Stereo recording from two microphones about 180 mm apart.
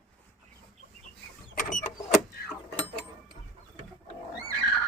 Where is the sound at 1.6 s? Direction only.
45° left (ahead or behind).